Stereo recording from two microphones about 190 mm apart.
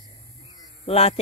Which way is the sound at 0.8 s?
30° left (ahead or behind).